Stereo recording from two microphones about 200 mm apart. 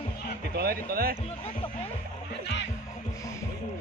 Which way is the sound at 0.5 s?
50° right (ahead or behind).